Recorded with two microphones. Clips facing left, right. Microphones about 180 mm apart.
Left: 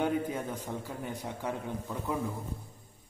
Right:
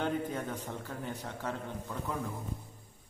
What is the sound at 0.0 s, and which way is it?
A man's voice, 10° left (ahead or behind).